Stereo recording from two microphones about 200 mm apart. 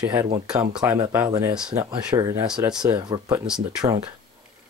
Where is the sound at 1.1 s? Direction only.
10° right (ahead or behind).